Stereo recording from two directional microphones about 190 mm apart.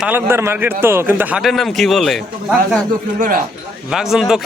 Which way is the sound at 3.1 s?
45° right (ahead or behind).